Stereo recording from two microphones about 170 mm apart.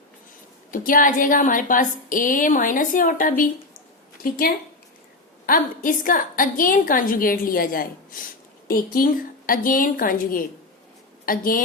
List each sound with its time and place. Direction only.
0.7 s a woman's voice: 55° left (ahead or behind)